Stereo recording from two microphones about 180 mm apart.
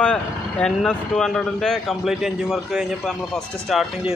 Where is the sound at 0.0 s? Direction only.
5° left (ahead or behind).